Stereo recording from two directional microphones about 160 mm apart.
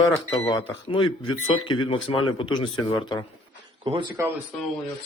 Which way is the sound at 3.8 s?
35° right (ahead or behind).